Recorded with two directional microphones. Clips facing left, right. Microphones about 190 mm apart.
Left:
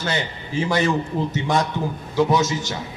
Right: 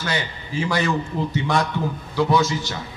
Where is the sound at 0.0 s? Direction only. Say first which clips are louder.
Left 1 dB; 25° left (ahead or behind).